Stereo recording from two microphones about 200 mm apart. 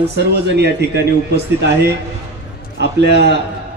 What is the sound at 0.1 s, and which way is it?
A man's voice, 55° right (ahead or behind).